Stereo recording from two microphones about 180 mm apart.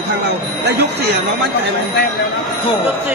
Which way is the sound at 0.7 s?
65° right (ahead or behind).